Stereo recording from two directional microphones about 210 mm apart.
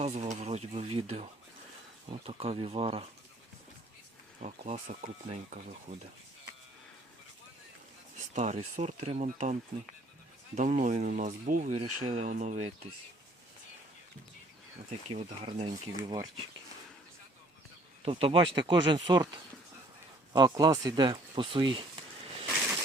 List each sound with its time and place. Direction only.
0.0 s speech: 35° right (ahead or behind)
4.4 s speech: 30° right (ahead or behind)
8.3 s speech: 35° right (ahead or behind)
11.9 s speech: 90° right
12.1 s speech: 35° right (ahead or behind)
15.1 s speech: 25° right (ahead or behind)
18.0 s speech: 25° right (ahead or behind)
20.3 s speech: 20° right (ahead or behind)